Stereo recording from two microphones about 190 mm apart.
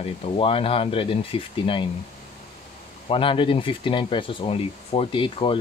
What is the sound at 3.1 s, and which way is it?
Speech, 25° left (ahead or behind).